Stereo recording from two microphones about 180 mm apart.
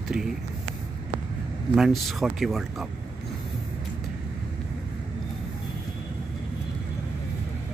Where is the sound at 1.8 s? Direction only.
Centre (ahead or behind).